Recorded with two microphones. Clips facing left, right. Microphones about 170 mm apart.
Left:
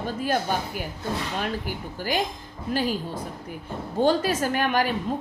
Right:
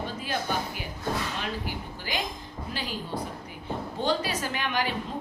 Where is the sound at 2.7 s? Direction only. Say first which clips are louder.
Left 8 dB; 45° left (ahead or behind).